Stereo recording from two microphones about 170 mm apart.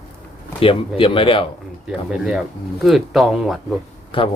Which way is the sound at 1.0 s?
30° left (ahead or behind).